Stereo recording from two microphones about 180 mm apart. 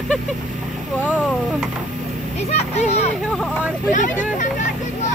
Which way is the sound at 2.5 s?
35° left (ahead or behind).